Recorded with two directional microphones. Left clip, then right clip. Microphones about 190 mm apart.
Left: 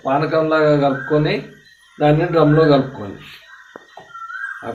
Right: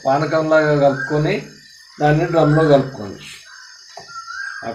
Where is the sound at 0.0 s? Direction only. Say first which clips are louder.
Even; 25° right (ahead or behind).